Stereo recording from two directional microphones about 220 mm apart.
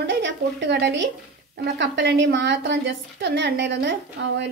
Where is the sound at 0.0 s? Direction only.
55° right (ahead or behind).